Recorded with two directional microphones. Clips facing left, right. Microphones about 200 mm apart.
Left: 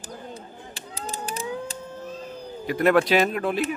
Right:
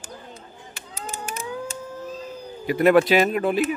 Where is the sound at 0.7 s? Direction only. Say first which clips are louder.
Left 1 dB; 35° left (ahead or behind).